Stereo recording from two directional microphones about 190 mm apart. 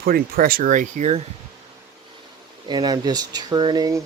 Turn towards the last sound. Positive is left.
turn(degrees=-20)  # may be behind; listen again after turning